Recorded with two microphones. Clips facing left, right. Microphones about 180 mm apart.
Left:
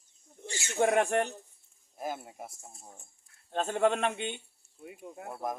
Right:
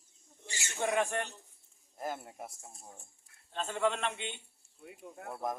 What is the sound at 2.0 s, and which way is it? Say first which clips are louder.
Speech: left 2 dB; 10° left (ahead or behind).